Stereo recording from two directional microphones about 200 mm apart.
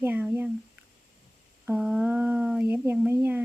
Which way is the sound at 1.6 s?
5° right (ahead or behind).